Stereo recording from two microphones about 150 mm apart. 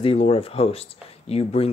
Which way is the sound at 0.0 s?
40° left (ahead or behind).